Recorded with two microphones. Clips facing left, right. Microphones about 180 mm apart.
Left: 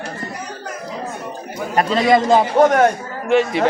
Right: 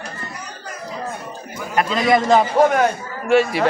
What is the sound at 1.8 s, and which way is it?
Speech, 35° left (ahead or behind).